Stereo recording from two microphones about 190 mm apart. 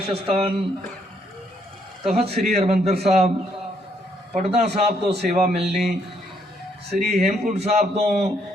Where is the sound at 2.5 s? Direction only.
35° right (ahead or behind).